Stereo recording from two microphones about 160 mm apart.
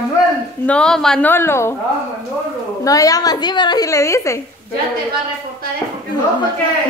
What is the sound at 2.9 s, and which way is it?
A woman's voice, 20° left (ahead or behind).